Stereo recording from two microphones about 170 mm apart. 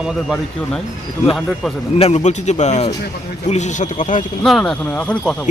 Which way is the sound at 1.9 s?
40° left (ahead or behind).